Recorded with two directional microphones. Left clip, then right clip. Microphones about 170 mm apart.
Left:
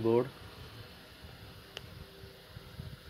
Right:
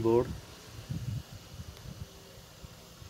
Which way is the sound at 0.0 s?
Centre (ahead or behind).